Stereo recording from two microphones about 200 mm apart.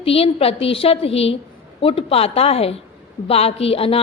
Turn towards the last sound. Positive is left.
turn(degrees=30)  # may be behind; listen again after turning